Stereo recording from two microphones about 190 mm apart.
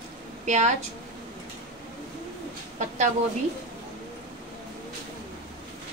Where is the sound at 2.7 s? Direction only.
40° right (ahead or behind).